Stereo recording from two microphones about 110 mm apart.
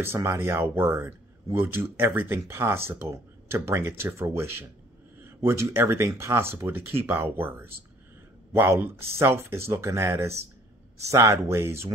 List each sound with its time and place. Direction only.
0.0 s speech: 25° right (ahead or behind)